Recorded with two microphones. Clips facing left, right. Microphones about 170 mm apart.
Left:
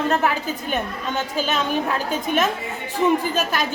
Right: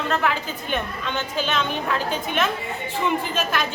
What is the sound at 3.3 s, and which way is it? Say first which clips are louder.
Speech: left 2 dB; 40° left (ahead or behind).